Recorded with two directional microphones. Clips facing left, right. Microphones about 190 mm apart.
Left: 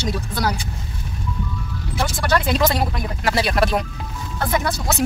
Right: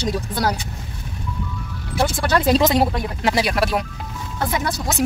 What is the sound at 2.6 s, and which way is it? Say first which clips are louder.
Speech: right 3 dB; 20° right (ahead or behind).